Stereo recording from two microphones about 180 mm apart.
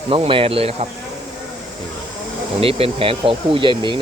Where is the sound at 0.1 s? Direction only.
30° right (ahead or behind).